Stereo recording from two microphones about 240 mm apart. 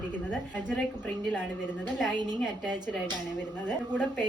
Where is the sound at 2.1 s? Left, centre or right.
Centre.